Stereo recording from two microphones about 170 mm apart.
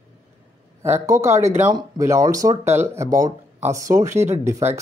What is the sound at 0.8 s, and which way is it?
Speech, 15° right (ahead or behind).